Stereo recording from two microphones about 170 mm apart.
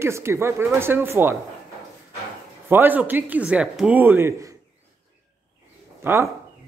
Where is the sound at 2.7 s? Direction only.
10° right (ahead or behind).